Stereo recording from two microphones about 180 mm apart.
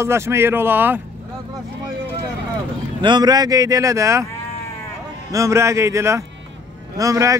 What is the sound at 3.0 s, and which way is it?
Speech, 25° right (ahead or behind).